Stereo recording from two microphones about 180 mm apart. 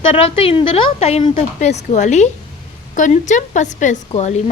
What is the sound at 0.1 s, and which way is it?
A woman's voice, 30° left (ahead or behind).